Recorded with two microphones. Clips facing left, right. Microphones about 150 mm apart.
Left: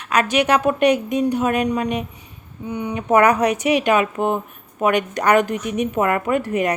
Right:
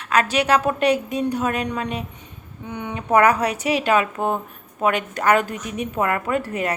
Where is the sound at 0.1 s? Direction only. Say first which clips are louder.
Left 1 dB; 15° left (ahead or behind).